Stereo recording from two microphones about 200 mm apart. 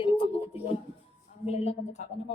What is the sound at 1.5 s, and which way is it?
Speech, 30° left (ahead or behind).